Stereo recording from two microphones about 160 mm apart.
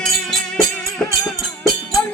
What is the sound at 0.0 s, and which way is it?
Music, 5° left (ahead or behind).